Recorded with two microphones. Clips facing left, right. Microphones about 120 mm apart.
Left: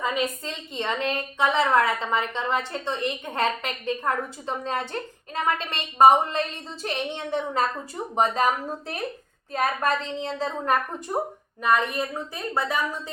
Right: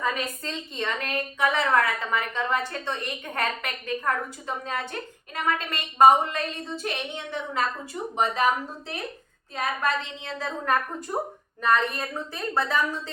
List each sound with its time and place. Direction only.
0.0 s a woman's voice: 15° left (ahead or behind); by 8.4 s 35° left (ahead or behind)
9.5 s a woman's voice: 45° left (ahead or behind)
11.1 s a woman's voice: 20° left (ahead or behind)